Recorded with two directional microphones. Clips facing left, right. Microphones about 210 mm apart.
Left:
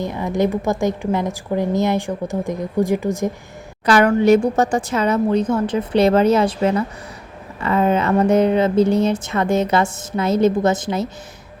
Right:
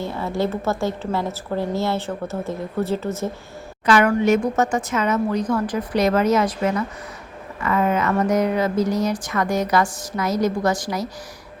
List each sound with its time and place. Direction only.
0.0 s a woman's voice: 15° left (ahead or behind)
3.8 s speech: 35° left (ahead or behind)